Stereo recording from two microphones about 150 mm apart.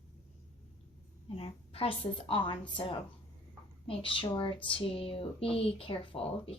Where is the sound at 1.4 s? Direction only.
40° left (ahead or behind).